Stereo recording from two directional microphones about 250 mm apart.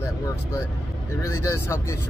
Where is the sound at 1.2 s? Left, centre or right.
Centre.